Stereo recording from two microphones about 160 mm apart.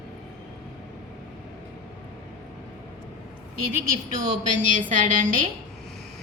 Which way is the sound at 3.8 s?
60° right (ahead or behind).